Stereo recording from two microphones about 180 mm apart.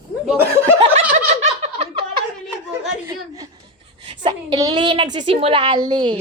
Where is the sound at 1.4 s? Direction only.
40° right (ahead or behind).